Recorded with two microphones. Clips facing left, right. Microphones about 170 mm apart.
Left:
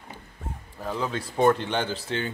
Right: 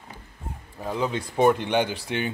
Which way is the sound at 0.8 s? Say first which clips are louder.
Right 2 dB; 15° right (ahead or behind).